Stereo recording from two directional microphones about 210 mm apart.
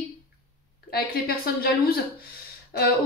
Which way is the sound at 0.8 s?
45° left (ahead or behind).